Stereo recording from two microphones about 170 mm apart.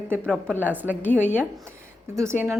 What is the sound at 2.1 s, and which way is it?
Speech, 15° right (ahead or behind).